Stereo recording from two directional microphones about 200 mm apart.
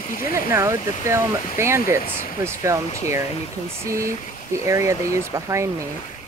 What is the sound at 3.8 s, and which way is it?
Speech, 15° right (ahead or behind).